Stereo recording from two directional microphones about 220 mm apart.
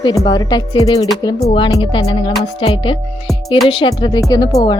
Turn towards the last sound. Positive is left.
turn(degrees=15)  # may be behind; listen again after turning